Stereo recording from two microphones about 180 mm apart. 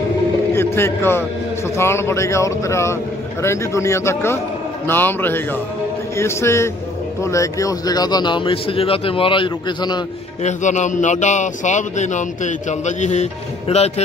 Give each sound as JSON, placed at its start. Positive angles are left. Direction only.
{"t": 0.6, "sound": "a man's voice", "side_deg": 15}
{"t": 10.4, "sound": "speech", "side_deg": 40}